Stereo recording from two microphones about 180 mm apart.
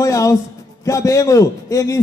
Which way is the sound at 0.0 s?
20° left (ahead or behind).